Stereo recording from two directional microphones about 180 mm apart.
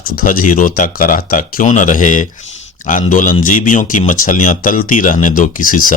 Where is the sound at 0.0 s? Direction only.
50° left (ahead or behind).